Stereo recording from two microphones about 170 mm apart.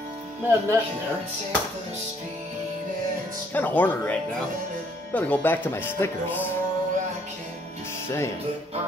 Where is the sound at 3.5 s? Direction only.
10° left (ahead or behind).